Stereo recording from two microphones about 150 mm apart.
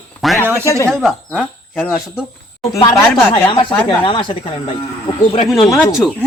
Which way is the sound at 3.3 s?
35° left (ahead or behind).